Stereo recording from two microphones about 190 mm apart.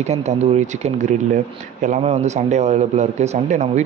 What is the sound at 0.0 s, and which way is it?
Speech, 35° right (ahead or behind).